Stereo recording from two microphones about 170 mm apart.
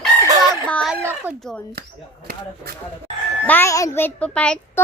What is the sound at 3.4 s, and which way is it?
A child's voice, 10° left (ahead or behind).